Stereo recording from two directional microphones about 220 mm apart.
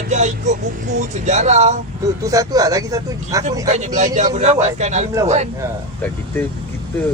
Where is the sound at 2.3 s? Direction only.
15° right (ahead or behind).